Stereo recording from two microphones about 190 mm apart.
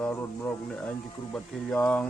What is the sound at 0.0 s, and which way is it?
Speech, 10° left (ahead or behind).